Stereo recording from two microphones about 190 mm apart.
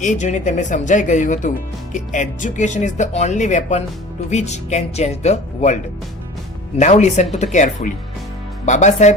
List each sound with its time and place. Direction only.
0.0 s speech: 40° left (ahead or behind)
6.7 s speech: 35° left (ahead or behind)